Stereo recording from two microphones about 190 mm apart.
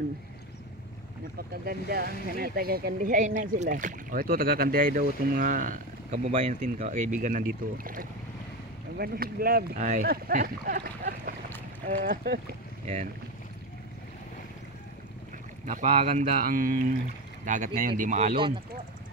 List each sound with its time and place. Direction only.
1.5 s speech: 55° right (ahead or behind)
12.8 s speech: 35° right (ahead or behind)
15.6 s speech: 40° right (ahead or behind)